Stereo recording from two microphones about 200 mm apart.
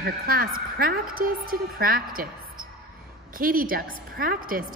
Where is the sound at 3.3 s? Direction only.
45° right (ahead or behind).